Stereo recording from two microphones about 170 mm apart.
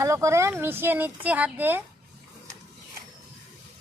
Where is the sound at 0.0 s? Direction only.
20° right (ahead or behind).